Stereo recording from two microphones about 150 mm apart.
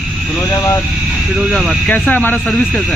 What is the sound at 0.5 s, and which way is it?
Speech, 20° left (ahead or behind).